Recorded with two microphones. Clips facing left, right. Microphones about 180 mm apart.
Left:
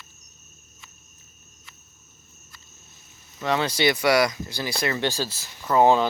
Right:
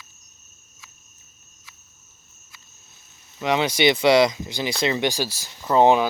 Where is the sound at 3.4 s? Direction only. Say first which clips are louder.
Right 3 dB; 15° right (ahead or behind).